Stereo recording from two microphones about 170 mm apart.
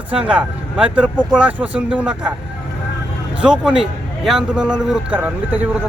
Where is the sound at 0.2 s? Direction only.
5° right (ahead or behind).